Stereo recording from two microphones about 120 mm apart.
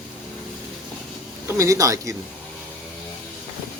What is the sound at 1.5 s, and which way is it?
Speech, 25° right (ahead or behind).